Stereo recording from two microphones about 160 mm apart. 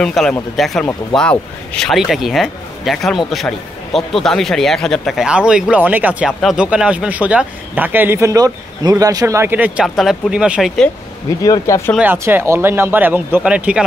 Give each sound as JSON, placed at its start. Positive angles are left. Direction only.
{"t": 0.0, "sound": "a man's voice", "side_deg": 5}
{"t": 9.8, "sound": "speech", "side_deg": 0}
{"t": 11.4, "sound": "speech", "side_deg": 20}
{"t": 12.0, "sound": "a man's voice", "side_deg": -10}